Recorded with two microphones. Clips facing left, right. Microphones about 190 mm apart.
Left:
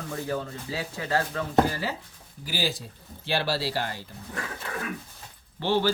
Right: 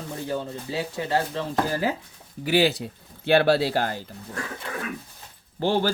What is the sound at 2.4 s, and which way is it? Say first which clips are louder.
Speech: right 10 dB; 70° right (ahead or behind).